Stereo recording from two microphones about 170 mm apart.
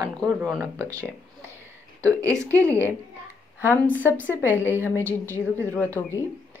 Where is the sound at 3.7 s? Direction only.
10° left (ahead or behind).